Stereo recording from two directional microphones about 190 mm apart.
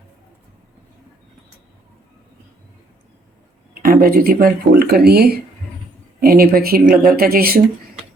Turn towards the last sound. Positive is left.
turn(degrees=-50)  # may be behind; listen again after turning